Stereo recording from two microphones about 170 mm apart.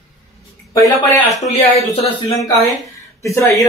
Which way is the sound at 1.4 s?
35° left (ahead or behind).